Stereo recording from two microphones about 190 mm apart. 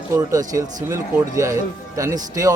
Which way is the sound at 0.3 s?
15° right (ahead or behind).